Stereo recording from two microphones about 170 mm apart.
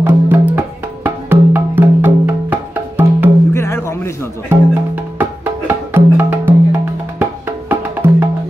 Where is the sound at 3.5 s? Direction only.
15° left (ahead or behind).